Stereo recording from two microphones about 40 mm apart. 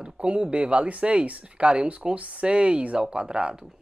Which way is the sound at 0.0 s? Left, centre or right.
Right.